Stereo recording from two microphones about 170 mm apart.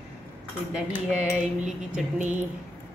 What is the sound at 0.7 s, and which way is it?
Speech, 5° right (ahead or behind).